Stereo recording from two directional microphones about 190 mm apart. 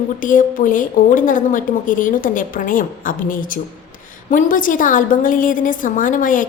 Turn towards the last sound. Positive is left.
turn(degrees=45)  # may be behind; listen again after turning